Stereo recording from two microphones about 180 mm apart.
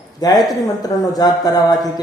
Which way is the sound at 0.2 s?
20° left (ahead or behind).